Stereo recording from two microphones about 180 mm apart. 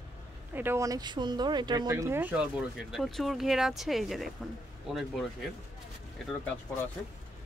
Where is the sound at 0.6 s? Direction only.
15° right (ahead or behind).